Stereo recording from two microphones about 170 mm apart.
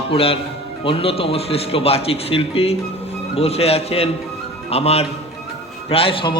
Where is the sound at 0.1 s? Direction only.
35° left (ahead or behind).